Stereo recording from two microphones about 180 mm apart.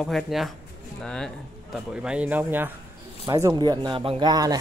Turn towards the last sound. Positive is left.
turn(degrees=-20)  # may be behind; listen again after turning